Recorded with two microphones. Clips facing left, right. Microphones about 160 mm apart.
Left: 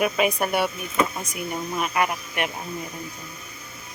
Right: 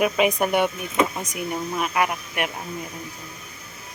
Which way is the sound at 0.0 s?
15° right (ahead or behind).